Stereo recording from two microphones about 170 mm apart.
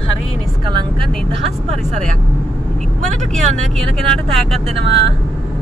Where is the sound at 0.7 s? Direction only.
30° right (ahead or behind).